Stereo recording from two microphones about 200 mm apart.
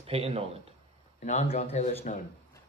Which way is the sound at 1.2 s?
35° left (ahead or behind).